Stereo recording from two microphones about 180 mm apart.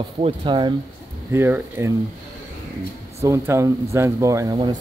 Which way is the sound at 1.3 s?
15° right (ahead or behind).